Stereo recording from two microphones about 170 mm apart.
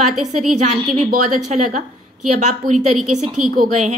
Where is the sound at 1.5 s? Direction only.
45° right (ahead or behind).